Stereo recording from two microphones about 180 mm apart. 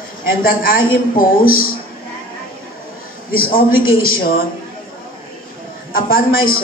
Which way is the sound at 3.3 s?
55° left (ahead or behind).